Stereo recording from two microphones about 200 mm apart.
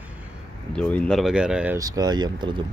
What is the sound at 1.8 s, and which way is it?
Speech, 20° right (ahead or behind).